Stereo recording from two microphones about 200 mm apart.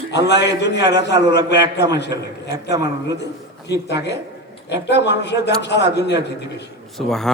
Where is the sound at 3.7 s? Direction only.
60° left (ahead or behind).